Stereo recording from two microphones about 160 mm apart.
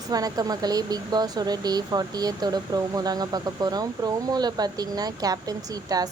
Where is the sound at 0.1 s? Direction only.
25° right (ahead or behind).